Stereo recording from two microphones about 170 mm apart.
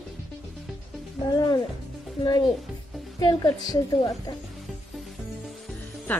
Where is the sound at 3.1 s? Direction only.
25° left (ahead or behind).